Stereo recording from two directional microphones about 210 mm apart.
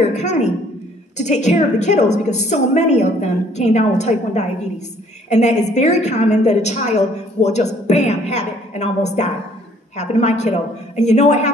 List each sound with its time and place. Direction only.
0.1 s a woman's voice: 35° left (ahead or behind)